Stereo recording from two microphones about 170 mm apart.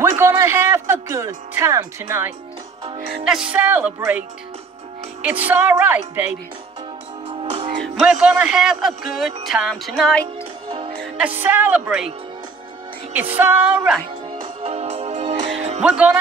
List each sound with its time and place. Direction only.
0.0 s speech: 15° right (ahead or behind)
3.3 s music: 5° right (ahead or behind)
5.2 s music: 10° right (ahead or behind)
7.8 s speech: centre (ahead or behind)
11.1 s music: 10° right (ahead or behind)
13.1 s music: 10° right (ahead or behind)
14.4 s music: 35° right (ahead or behind)
15.8 s speech: 5° right (ahead or behind)